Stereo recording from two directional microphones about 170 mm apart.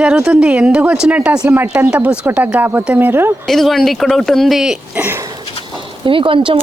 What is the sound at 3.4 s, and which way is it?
Speech, centre (ahead or behind).